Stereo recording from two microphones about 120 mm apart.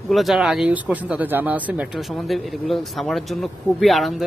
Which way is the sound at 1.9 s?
Centre (ahead or behind).